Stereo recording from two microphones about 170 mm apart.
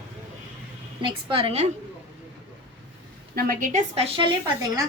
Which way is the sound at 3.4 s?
55° right (ahead or behind).